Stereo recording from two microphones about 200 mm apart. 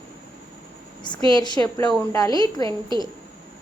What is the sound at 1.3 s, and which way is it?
Speech, 20° left (ahead or behind).